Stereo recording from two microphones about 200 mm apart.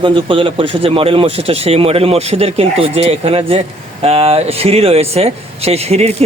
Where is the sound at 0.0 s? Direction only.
25° right (ahead or behind).